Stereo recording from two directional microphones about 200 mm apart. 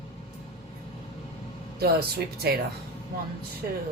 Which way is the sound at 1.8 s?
50° right (ahead or behind).